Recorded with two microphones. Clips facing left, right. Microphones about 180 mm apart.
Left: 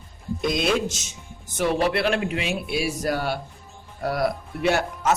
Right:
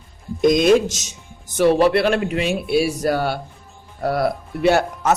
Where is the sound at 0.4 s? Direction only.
40° right (ahead or behind).